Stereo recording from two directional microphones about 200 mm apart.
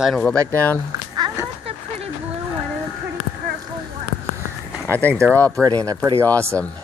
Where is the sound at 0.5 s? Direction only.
10° left (ahead or behind).